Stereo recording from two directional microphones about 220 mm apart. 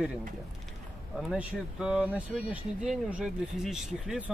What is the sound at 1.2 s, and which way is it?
Speech, 5° right (ahead or behind).